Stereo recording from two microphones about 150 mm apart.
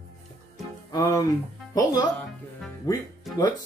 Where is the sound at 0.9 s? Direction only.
25° left (ahead or behind).